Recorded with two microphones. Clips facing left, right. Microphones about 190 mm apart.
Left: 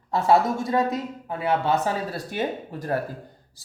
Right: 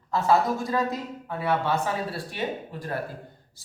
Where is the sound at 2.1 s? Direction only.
45° left (ahead or behind).